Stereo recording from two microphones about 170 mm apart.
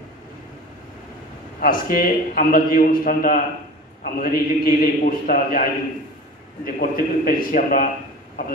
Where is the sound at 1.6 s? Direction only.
55° left (ahead or behind).